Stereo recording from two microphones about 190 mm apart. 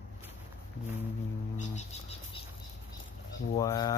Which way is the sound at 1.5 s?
40° left (ahead or behind).